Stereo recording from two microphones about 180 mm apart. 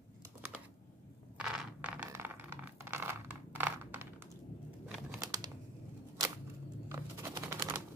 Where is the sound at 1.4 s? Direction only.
5° right (ahead or behind).